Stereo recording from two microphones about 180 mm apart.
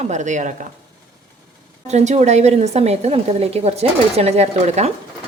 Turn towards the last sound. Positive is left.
turn(degrees=-35)  # may be behind; listen again after turning